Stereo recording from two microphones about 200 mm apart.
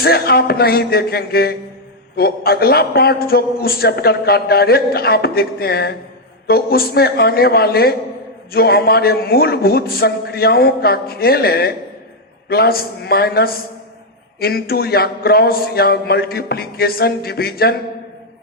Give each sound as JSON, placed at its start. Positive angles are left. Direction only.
{"t": 0.0, "sound": "a man's voice", "side_deg": 50}